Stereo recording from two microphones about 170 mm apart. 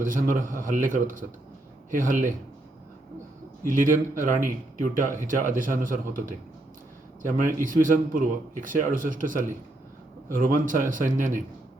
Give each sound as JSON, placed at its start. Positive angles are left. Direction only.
{"t": 0.0, "sound": "speech", "side_deg": -50}
{"t": 3.6, "sound": "speech", "side_deg": -55}